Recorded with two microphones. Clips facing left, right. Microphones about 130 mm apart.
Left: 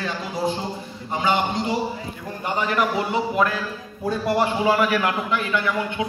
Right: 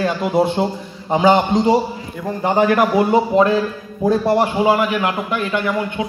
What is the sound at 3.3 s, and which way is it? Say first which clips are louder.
Speech: right 8 dB; 30° right (ahead or behind).